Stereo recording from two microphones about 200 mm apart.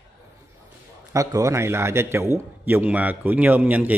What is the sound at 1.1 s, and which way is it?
Speech, 15° right (ahead or behind).